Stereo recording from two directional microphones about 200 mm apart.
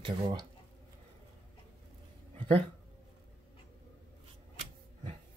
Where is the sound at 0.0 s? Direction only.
20° right (ahead or behind).